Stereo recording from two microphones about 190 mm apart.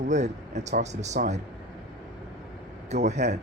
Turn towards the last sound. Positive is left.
turn(degrees=-35)  # may be behind; listen again after turning